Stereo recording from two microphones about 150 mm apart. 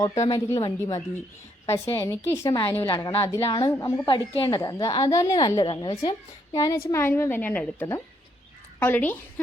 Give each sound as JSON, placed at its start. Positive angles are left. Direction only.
{"t": 0.2, "sound": "a woman's voice", "side_deg": 20}
{"t": 2.8, "sound": "a woman's voice", "side_deg": 30}
{"t": 3.7, "sound": "a woman's voice", "side_deg": 20}
{"t": 4.0, "sound": "a woman's voice", "side_deg": 35}